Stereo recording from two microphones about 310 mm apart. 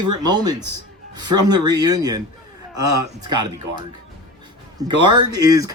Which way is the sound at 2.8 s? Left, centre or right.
Right.